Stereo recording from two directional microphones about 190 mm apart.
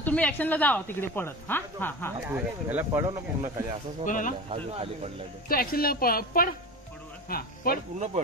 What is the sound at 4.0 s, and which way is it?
Speech, 45° left (ahead or behind).